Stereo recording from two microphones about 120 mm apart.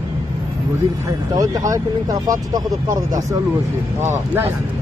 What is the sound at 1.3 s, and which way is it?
Speech, 30° right (ahead or behind).